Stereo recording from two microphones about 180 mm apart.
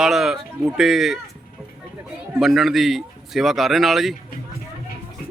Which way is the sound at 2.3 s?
Centre (ahead or behind).